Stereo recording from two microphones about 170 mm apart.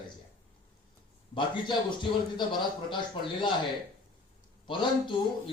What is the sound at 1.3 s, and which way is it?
A man's voice, 30° left (ahead or behind).